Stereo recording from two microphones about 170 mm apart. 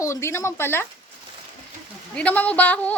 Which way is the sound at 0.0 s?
15° left (ahead or behind).